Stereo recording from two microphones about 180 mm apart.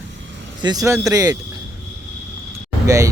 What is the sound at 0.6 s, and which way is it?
Speech, 20° right (ahead or behind).